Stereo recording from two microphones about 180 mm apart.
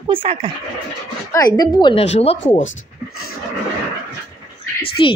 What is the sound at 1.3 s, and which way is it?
A woman's voice, 20° left (ahead or behind).